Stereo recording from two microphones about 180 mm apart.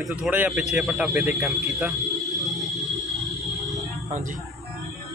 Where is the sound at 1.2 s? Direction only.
10° right (ahead or behind).